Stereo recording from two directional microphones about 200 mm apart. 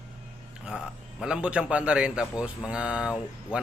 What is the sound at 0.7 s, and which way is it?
Speech, 5° right (ahead or behind).